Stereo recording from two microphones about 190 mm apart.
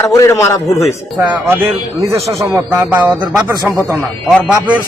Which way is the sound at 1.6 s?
15° right (ahead or behind).